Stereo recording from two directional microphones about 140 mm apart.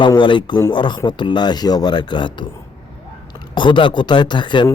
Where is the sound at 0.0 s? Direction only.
35° left (ahead or behind).